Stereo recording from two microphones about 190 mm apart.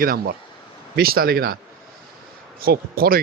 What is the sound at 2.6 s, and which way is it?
Speech, 50° right (ahead or behind).